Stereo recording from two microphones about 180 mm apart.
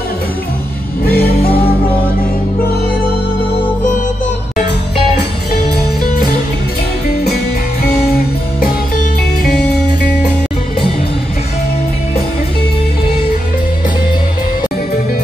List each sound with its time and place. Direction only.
1.0 s music: 60° left (ahead or behind)